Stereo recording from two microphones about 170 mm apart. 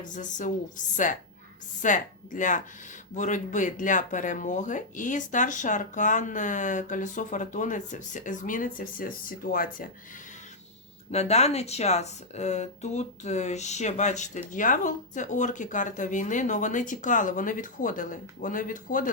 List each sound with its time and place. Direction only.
0.0 s speech: 50° left (ahead or behind)
1.8 s speech: 50° left (ahead or behind)
11.1 s speech: 40° left (ahead or behind)